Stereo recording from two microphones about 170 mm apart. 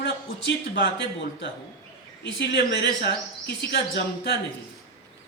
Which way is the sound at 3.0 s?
70° left (ahead or behind).